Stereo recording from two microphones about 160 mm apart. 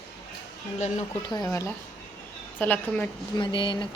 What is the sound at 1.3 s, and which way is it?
A woman's voice, 20° left (ahead or behind).